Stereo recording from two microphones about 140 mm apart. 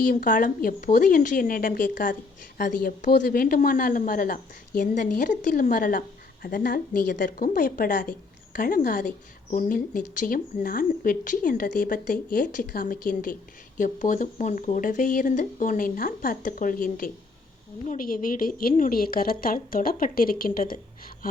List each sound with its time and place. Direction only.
0.0 s a woman's voice: 70° left (ahead or behind)
8.5 s a woman's voice: 90° left
13.7 s a woman's voice: 65° left (ahead or behind); by 20.7 s 90° left